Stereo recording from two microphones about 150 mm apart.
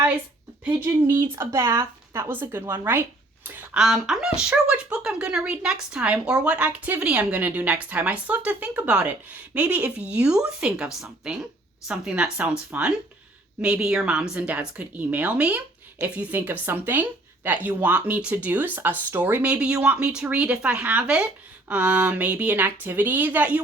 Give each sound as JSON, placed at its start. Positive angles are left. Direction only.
{"t": 0.6, "sound": "a woman's voice", "side_deg": -15}
{"t": 3.8, "sound": "a woman's voice", "side_deg": 0}